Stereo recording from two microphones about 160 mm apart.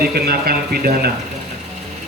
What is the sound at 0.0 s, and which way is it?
Speech, 75° right (ahead or behind).